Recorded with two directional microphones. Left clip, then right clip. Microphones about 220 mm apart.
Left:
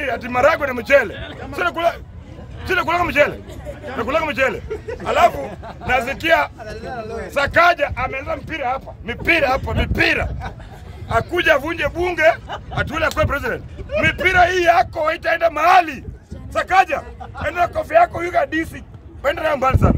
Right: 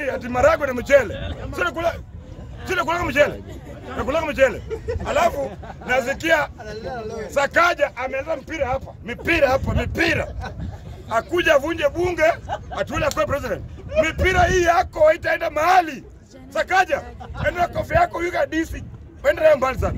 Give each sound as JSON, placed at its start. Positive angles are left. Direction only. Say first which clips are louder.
{"t": 0.0, "sound": "a man's voice", "louder": "left 2 dB", "side_deg": 0}
{"t": 1.1, "sound": "speech", "louder": "even", "side_deg": -50}
{"t": 1.5, "sound": "a man's voice", "louder": "left 4 dB", "side_deg": -5}
{"t": 6.6, "sound": "speech", "louder": "left 1 dB", "side_deg": -40}
{"t": 7.2, "sound": "a man's voice", "louder": "left 3 dB", "side_deg": -5}